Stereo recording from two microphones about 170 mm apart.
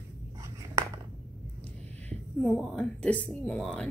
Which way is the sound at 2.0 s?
5° left (ahead or behind).